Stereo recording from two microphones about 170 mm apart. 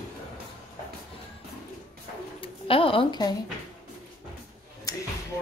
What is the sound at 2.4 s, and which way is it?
Speech, 30° left (ahead or behind).